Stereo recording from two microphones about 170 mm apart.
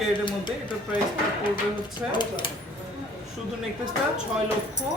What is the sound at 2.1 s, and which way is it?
Speech, 25° left (ahead or behind).